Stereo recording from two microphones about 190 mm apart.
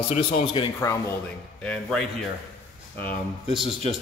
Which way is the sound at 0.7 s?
15° left (ahead or behind).